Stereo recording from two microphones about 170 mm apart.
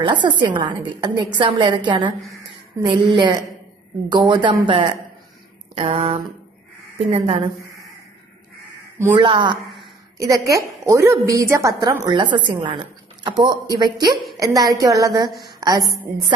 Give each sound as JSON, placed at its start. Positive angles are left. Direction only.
{"t": 0.0, "sound": "a woman's voice", "side_deg": -30}
{"t": 5.8, "sound": "a sound", "side_deg": -35}
{"t": 9.1, "sound": "a woman's voice", "side_deg": -30}
{"t": 14.1, "sound": "a woman's voice", "side_deg": 0}
{"t": 14.4, "sound": "a woman's voice", "side_deg": -20}